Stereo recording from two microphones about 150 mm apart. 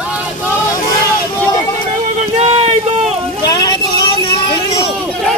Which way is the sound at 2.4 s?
45° right (ahead or behind).